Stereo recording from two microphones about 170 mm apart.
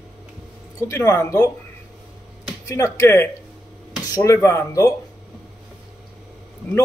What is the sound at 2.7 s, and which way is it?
Speech, 15° left (ahead or behind).